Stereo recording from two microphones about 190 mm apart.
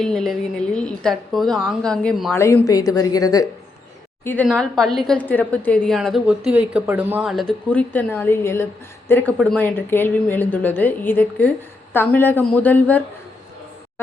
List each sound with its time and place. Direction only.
0.0 s a woman's voice: centre (ahead or behind)
2.3 s a woman's voice: 10° left (ahead or behind)